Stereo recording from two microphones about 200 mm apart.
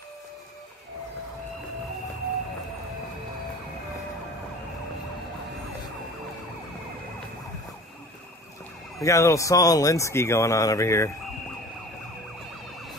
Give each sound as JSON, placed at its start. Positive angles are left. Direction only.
{"t": 9.0, "sound": "speech", "side_deg": 15}